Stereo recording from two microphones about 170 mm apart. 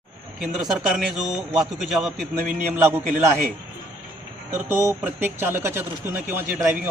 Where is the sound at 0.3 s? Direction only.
Centre (ahead or behind).